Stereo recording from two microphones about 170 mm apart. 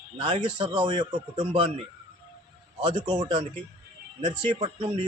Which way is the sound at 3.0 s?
25° right (ahead or behind).